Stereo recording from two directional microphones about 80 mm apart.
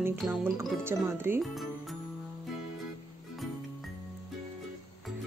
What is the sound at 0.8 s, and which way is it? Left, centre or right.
Speech, right.